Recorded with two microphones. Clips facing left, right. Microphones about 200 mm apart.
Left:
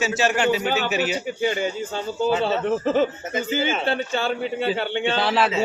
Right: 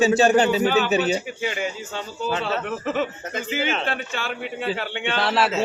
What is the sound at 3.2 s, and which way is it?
Speech, 5° left (ahead or behind).